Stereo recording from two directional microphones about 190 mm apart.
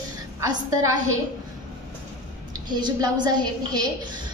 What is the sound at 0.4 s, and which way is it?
Speech, 15° right (ahead or behind).